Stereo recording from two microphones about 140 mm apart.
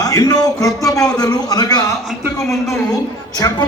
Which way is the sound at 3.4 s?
25° left (ahead or behind).